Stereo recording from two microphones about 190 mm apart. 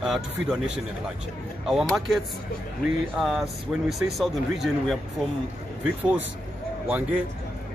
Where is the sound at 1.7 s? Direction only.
Centre (ahead or behind).